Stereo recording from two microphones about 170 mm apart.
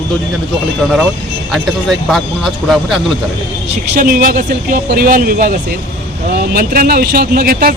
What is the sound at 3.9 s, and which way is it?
Speech, 55° right (ahead or behind).